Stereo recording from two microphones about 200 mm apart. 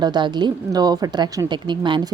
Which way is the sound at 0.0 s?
20° right (ahead or behind).